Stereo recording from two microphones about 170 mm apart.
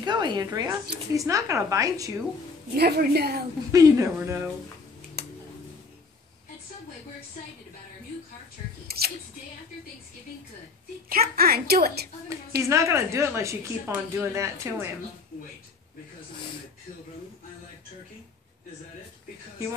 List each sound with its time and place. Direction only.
0.0 s speech: 25° right (ahead or behind)
2.7 s a woman's voice: 70° right (ahead or behind)
3.7 s speech: 20° right (ahead or behind)
8.8 s scissors: 65° right (ahead or behind)
11.1 s a woman's voice: 60° right (ahead or behind)
12.6 s a woman's voice: 15° right (ahead or behind)